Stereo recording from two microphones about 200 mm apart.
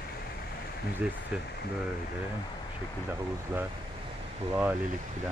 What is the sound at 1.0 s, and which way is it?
Speech, 5° right (ahead or behind).